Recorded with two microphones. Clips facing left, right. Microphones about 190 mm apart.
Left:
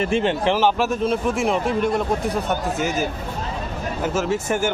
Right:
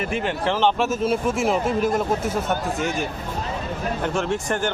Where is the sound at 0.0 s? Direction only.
25° left (ahead or behind).